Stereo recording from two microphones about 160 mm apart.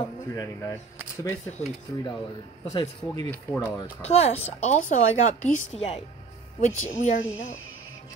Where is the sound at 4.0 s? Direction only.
40° left (ahead or behind).